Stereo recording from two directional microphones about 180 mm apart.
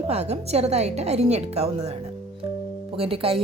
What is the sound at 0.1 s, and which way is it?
A woman's voice, 35° right (ahead or behind).